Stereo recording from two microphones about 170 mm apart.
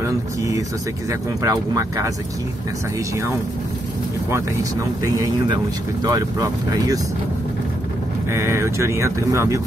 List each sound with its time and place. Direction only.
0.0 s speech: 20° right (ahead or behind)
5.0 s speech: 20° right (ahead or behind)
8.3 s speech: 15° right (ahead or behind)